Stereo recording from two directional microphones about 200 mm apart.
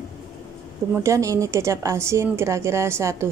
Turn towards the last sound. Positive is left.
turn(degrees=-15)  # may be behind; listen again after turning